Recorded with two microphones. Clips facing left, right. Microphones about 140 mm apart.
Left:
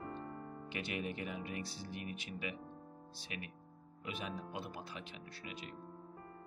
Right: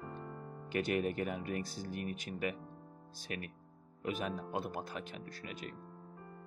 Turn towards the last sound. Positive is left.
turn(degrees=-45)  # may be behind; listen again after turning